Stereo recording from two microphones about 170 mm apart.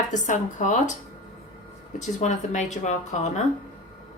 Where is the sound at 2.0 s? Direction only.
45° left (ahead or behind).